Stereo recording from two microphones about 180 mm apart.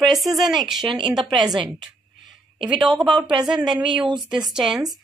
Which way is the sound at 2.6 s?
5° right (ahead or behind).